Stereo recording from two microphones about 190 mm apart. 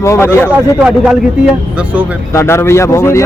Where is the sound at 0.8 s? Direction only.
5° right (ahead or behind).